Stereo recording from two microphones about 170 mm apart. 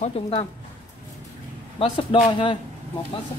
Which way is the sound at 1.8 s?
35° left (ahead or behind).